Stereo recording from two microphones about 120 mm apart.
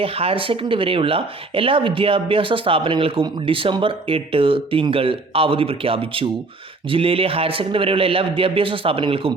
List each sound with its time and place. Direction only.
0.0 s speech: 50° right (ahead or behind)